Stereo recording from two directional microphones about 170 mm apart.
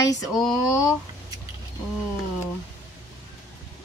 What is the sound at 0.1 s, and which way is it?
Speech, 20° left (ahead or behind).